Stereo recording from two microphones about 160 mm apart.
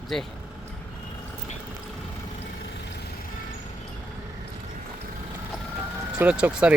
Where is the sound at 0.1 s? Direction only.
Centre (ahead or behind).